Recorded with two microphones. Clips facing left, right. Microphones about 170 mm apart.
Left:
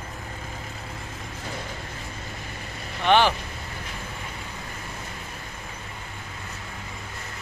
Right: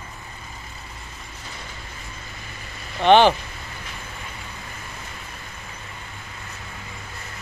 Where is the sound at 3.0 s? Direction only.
25° right (ahead or behind).